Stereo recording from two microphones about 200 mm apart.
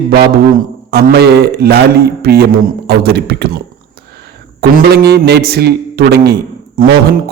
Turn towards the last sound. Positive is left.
turn(degrees=-50)  # may be behind; listen again after turning